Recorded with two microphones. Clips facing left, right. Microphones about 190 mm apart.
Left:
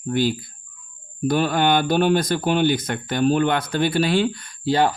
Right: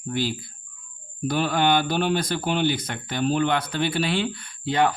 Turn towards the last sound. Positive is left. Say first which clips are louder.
# left 3 dB
turn(degrees=35)  # may be behind; listen again after turning